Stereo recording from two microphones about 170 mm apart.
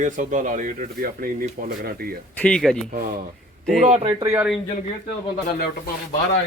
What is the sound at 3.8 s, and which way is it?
Speech, 40° right (ahead or behind).